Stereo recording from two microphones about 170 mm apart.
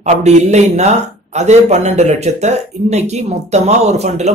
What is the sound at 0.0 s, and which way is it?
A man's voice, 45° right (ahead or behind).